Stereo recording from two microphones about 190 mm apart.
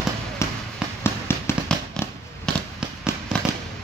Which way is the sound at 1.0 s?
15° left (ahead or behind).